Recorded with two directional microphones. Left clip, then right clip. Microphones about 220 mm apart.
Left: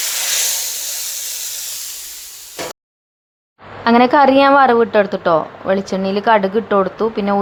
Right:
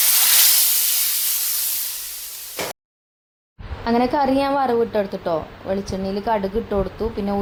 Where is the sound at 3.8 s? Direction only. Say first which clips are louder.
Left 8 dB; 15° left (ahead or behind).